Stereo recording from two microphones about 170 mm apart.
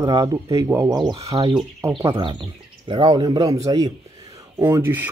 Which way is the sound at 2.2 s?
25° right (ahead or behind).